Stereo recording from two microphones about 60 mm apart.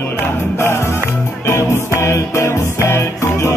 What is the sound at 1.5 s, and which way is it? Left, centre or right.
Music, left.